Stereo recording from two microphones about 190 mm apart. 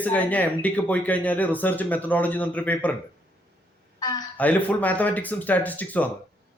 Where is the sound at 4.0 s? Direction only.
20° left (ahead or behind).